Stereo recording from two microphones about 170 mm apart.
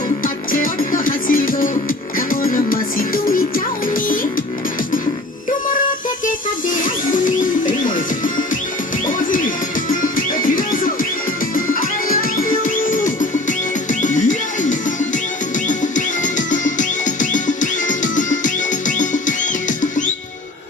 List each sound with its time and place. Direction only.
0.5 s music: 55° left (ahead or behind)
7.6 s music: 50° left (ahead or behind)
14.0 s music: 50° left (ahead or behind)